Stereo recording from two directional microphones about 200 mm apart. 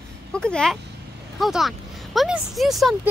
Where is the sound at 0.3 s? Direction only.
5° left (ahead or behind).